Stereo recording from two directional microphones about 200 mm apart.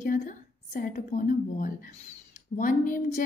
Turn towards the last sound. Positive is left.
turn(degrees=40)  # may be behind; listen again after turning